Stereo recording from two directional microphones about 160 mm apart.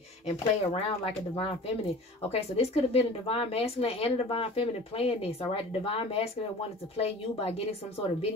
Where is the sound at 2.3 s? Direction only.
40° left (ahead or behind).